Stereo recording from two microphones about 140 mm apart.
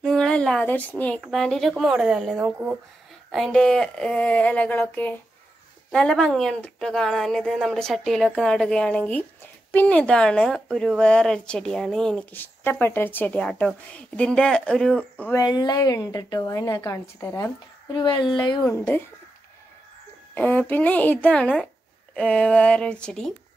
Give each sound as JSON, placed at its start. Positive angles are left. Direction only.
{"t": 0.0, "sound": "speech", "side_deg": 5}
{"t": 15.3, "sound": "a woman's voice", "side_deg": 30}
{"t": 18.7, "sound": "speech", "side_deg": 15}
{"t": 20.3, "sound": "speech", "side_deg": 10}